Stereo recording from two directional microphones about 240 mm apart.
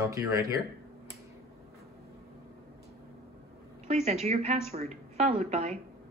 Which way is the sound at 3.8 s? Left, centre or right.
Right.